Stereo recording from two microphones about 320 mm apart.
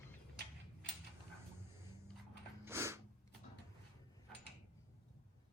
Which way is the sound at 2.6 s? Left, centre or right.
Centre.